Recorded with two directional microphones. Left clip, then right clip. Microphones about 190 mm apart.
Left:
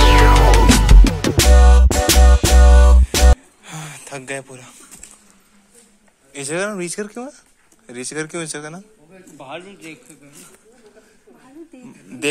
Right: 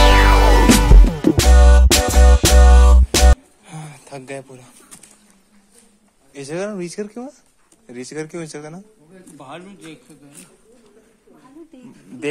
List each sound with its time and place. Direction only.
0.0 s music: centre (ahead or behind)
6.3 s speech: centre (ahead or behind)
9.4 s a man's voice: 55° right (ahead or behind)